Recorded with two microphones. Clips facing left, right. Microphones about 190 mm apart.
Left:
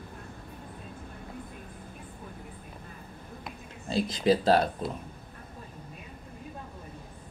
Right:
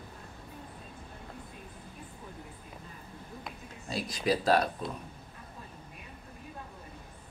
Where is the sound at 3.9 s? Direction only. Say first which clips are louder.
Left 6 dB; 25° left (ahead or behind).